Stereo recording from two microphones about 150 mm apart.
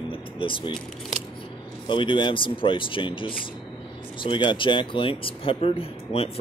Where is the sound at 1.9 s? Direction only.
35° left (ahead or behind).